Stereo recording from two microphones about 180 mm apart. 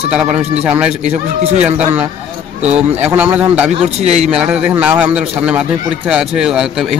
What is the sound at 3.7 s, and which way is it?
Speech, 35° right (ahead or behind).